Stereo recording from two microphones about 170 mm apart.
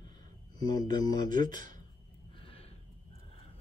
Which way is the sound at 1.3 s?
50° right (ahead or behind).